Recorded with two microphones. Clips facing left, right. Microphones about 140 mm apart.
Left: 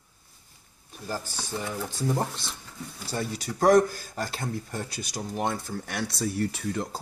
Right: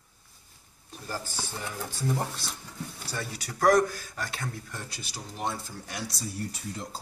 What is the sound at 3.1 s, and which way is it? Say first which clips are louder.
Speech: left 8 dB; 30° left (ahead or behind).